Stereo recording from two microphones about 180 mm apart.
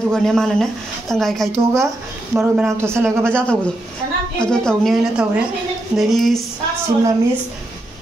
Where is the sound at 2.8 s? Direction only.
15° right (ahead or behind).